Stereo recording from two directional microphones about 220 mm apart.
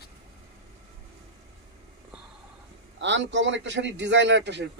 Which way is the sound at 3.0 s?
55° right (ahead or behind).